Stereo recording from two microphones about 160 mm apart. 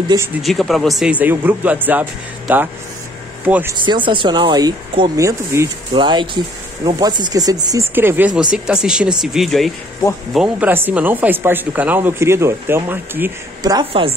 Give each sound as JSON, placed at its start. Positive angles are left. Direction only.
{"t": 0.4, "sound": "speech", "side_deg": 0}
{"t": 3.8, "sound": "speech", "side_deg": -30}
{"t": 5.9, "sound": "speech", "side_deg": -30}
{"t": 13.6, "sound": "speech", "side_deg": -25}